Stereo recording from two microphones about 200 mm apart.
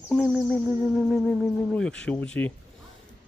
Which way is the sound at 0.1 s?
Centre (ahead or behind).